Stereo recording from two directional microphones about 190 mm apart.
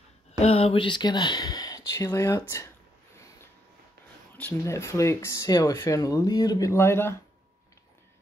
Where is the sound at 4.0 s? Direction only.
55° right (ahead or behind).